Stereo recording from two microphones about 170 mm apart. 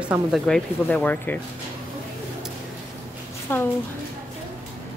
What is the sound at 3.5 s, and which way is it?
Speech, 15° left (ahead or behind).